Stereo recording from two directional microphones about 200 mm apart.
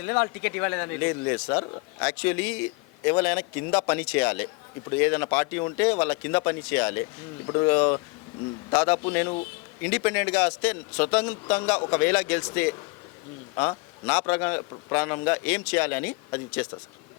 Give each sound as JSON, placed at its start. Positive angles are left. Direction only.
{"t": 0.0, "sound": "a man's voice", "side_deg": 10}
{"t": 13.6, "sound": "a man's voice", "side_deg": 10}